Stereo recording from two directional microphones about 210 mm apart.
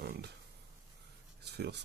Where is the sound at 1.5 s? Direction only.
50° right (ahead or behind).